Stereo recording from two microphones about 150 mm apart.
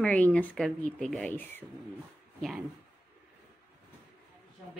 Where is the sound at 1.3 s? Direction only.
15° left (ahead or behind).